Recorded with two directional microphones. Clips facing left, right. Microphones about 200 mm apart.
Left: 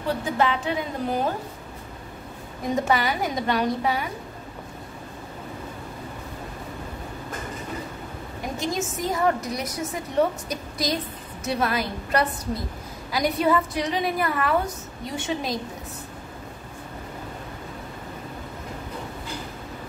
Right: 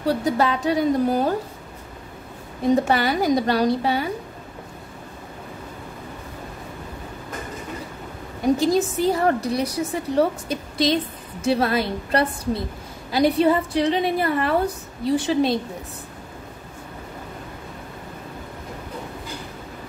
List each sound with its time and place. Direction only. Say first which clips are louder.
0.2 s a woman's voice: right 3 dB; 40° right (ahead or behind)
2.7 s a woman's voice: right 4 dB; 35° right (ahead or behind)
8.5 s a woman's voice: right 8 dB; 35° right (ahead or behind)